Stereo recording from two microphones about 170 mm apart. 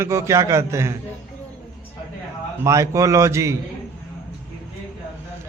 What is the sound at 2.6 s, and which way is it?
Speech, 20° right (ahead or behind).